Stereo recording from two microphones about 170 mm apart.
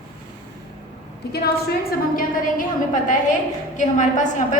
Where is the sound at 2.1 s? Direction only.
50° left (ahead or behind).